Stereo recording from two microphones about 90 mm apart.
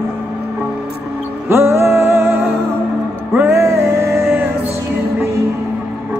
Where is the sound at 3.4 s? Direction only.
25° right (ahead or behind).